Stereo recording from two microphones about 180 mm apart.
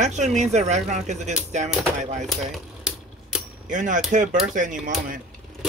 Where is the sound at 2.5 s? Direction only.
5° right (ahead or behind).